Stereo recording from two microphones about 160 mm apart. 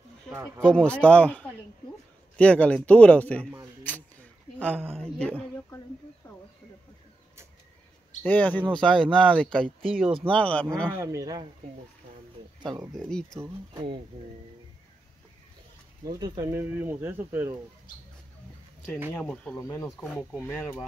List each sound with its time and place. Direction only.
0.6 s speech: 5° left (ahead or behind)
3.8 s a sound: 10° left (ahead or behind)
6.2 s a sound: 15° left (ahead or behind)
8.2 s speech: 10° left (ahead or behind)
10.3 s speech: 10° left (ahead or behind)
10.9 s speech: 15° right (ahead or behind)
12.6 s speech: 20° right (ahead or behind)
12.9 s speech: 5° left (ahead or behind)
16.1 s speech: 25° right (ahead or behind)
19.1 s speech: 10° left (ahead or behind)